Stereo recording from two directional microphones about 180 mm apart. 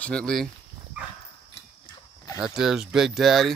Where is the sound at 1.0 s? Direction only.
5° right (ahead or behind).